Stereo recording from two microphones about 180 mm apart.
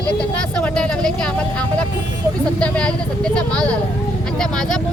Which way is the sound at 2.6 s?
5° left (ahead or behind).